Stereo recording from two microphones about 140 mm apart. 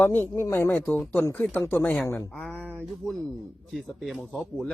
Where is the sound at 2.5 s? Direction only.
10° right (ahead or behind).